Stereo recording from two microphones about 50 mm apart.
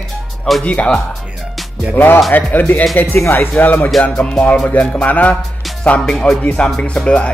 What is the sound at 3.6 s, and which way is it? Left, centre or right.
Music, left.